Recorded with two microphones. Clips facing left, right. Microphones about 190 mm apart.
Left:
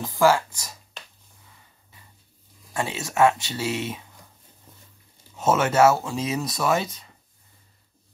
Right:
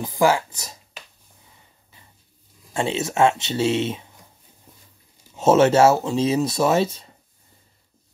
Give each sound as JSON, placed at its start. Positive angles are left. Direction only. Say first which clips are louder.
{"t": 0.0, "sound": "speech", "louder": "right 1 dB", "side_deg": -15}
{"t": 2.7, "sound": "speech", "louder": "right 5 dB", "side_deg": -25}
{"t": 5.3, "sound": "speech", "louder": "right 7 dB", "side_deg": -25}